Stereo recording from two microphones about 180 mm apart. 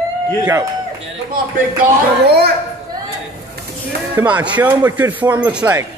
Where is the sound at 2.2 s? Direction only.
65° right (ahead or behind).